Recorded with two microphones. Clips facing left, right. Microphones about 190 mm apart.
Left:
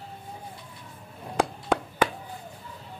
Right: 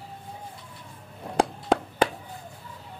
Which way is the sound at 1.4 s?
30° right (ahead or behind).